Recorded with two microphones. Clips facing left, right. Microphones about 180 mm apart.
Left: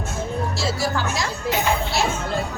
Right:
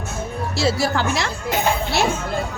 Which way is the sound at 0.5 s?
65° right (ahead or behind).